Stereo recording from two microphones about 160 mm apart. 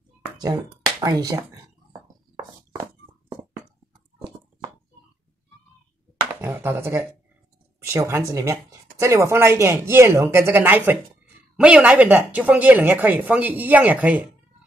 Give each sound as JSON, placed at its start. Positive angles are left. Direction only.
{"t": 1.0, "sound": "speech", "side_deg": -20}
{"t": 6.4, "sound": "a woman's voice", "side_deg": -15}